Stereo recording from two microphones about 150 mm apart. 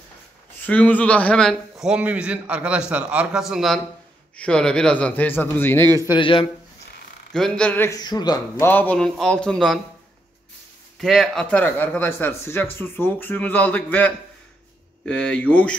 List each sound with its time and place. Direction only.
0.7 s a man's voice: 10° left (ahead or behind)
5.9 s a man's voice: 20° right (ahead or behind)
6.1 s speech: 35° left (ahead or behind)
7.3 s speech: 5° left (ahead or behind)
8.0 s speech: 25° left (ahead or behind)
8.6 s a man's voice: 10° left (ahead or behind)
11.0 s speech: centre (ahead or behind)